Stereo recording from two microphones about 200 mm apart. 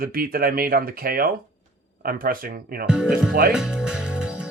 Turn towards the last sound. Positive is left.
turn(degrees=-5)  # may be behind; listen again after turning